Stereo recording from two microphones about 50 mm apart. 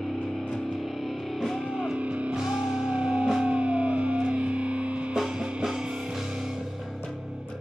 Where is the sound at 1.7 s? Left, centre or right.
Centre.